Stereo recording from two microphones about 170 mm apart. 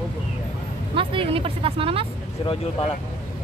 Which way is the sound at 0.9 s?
30° right (ahead or behind).